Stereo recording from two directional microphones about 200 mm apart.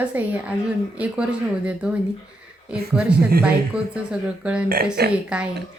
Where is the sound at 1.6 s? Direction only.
5° right (ahead or behind).